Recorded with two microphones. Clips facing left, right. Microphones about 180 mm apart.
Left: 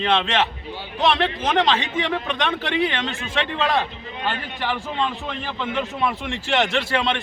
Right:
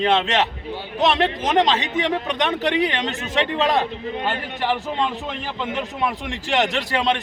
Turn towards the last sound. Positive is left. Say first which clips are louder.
# even
turn(degrees=-15)  # may be behind; listen again after turning